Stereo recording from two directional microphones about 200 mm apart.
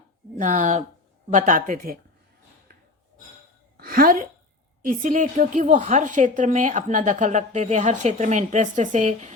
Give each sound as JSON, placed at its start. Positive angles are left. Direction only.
{"t": 0.3, "sound": "a woman's voice", "side_deg": -40}
{"t": 3.8, "sound": "a sound", "side_deg": -45}
{"t": 4.9, "sound": "a woman's voice", "side_deg": -40}